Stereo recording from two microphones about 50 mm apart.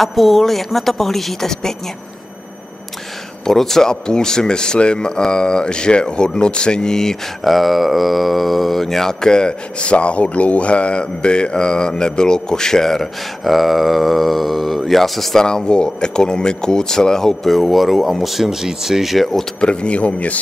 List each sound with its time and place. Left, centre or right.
0.0 s speech: centre
3.4 s speech: centre
15.4 s speech: centre
19.6 s speech: left